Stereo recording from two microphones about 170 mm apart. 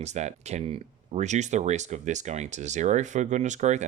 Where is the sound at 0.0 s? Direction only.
40° right (ahead or behind).